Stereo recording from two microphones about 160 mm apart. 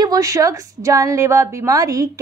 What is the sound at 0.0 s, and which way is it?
A woman's voice, 20° right (ahead or behind).